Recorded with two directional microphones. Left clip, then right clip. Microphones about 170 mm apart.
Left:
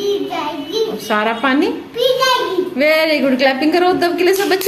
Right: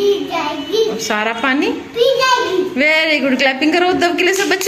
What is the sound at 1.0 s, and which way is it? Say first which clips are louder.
Speech: left 1 dB; 15° left (ahead or behind).